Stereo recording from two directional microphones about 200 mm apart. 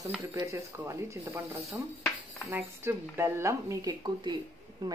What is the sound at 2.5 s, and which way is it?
Speech, 10° right (ahead or behind).